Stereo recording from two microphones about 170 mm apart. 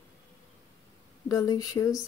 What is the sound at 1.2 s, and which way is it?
Speech, 20° left (ahead or behind).